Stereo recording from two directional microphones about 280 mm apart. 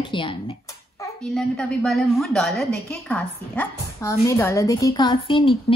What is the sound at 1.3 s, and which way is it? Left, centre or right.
A woman's voice, centre.